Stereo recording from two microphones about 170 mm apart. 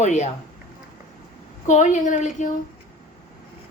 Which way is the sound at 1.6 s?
45° left (ahead or behind).